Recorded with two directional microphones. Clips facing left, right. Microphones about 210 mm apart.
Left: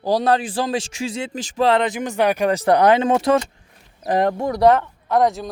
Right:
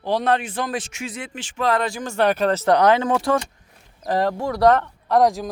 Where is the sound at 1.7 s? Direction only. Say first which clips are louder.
Left 2 dB; 20° left (ahead or behind).